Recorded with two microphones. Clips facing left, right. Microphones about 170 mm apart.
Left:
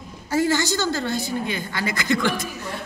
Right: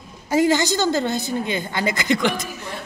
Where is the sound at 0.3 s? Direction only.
15° right (ahead or behind).